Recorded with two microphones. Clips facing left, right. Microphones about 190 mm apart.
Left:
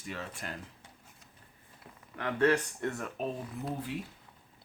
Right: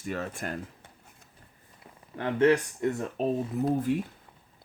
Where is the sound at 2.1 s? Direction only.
25° right (ahead or behind).